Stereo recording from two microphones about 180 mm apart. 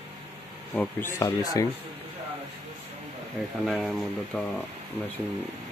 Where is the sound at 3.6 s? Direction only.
Centre (ahead or behind).